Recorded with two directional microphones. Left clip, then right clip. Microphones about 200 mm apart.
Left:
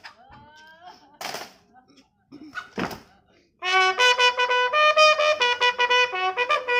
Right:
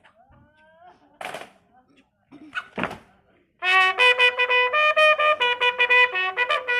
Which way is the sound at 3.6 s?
15° left (ahead or behind).